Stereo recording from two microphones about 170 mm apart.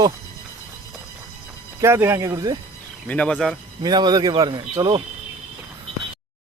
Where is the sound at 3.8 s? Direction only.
25° right (ahead or behind).